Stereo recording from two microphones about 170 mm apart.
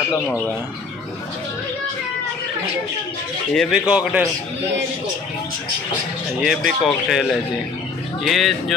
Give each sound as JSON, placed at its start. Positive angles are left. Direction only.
{"t": 0.3, "sound": "speech", "side_deg": -5}
{"t": 3.5, "sound": "speech", "side_deg": -5}
{"t": 6.4, "sound": "speech", "side_deg": 0}